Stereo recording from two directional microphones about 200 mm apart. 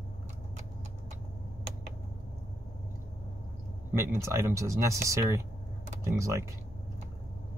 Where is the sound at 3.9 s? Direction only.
15° right (ahead or behind).